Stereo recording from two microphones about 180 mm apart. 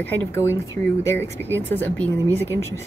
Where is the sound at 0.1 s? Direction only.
15° left (ahead or behind).